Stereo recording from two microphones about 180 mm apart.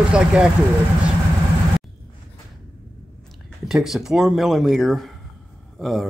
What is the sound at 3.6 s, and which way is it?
Speech, centre (ahead or behind).